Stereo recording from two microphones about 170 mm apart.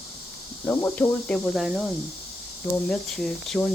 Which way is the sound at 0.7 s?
15° left (ahead or behind).